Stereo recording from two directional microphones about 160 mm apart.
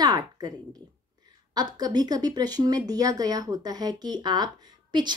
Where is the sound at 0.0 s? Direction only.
25° right (ahead or behind).